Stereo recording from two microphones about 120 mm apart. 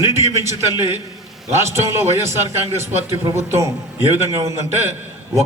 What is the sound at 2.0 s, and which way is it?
A man's voice, 20° right (ahead or behind).